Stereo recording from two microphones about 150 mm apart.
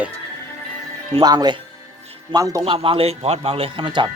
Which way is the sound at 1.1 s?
30° right (ahead or behind).